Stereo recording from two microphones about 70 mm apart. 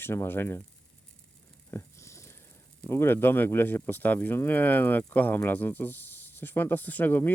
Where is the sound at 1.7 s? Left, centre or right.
Left.